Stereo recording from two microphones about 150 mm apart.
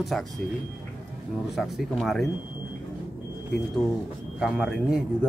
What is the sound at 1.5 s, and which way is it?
Speech, centre (ahead or behind).